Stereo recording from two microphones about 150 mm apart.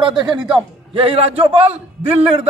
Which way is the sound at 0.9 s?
40° right (ahead or behind).